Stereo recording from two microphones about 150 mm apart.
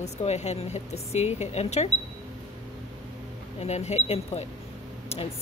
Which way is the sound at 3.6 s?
45° left (ahead or behind).